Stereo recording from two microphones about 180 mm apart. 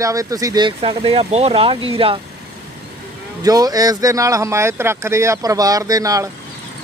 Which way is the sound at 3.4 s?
20° right (ahead or behind).